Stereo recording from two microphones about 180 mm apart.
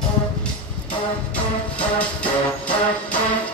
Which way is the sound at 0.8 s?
5° left (ahead or behind).